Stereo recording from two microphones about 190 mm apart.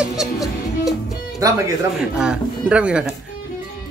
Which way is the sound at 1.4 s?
20° right (ahead or behind).